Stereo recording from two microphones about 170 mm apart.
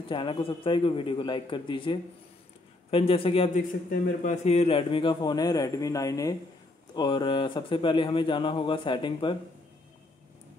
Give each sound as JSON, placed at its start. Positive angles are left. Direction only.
{"t": 0.1, "sound": "a man's voice", "side_deg": 30}
{"t": 3.9, "sound": "speech", "side_deg": 50}